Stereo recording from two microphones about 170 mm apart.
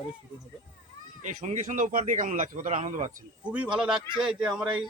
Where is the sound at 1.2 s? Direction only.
45° right (ahead or behind).